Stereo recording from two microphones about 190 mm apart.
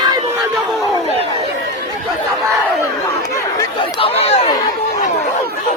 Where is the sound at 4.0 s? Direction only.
30° left (ahead or behind).